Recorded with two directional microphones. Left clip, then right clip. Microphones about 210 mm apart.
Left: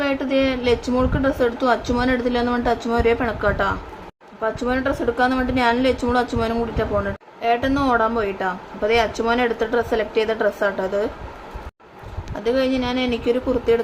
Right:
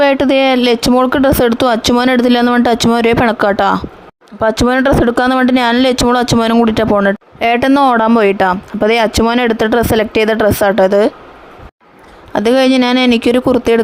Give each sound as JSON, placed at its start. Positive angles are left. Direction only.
{"t": 0.0, "sound": "speech", "side_deg": -50}
{"t": 12.3, "sound": "speech", "side_deg": -50}